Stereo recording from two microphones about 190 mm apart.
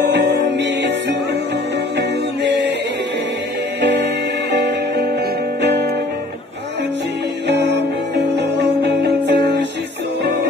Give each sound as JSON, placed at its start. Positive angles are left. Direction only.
{"t": 0.0, "sound": "music", "side_deg": -65}
{"t": 2.0, "sound": "music", "side_deg": -65}
{"t": 3.8, "sound": "music", "side_deg": -65}
{"t": 7.4, "sound": "music", "side_deg": -65}